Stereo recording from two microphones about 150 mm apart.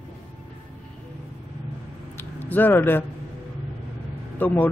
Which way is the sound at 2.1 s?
10° left (ahead or behind).